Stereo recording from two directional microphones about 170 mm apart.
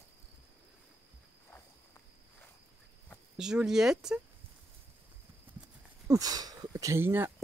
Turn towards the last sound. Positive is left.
turn(degrees=-15)  # may be behind; listen again after turning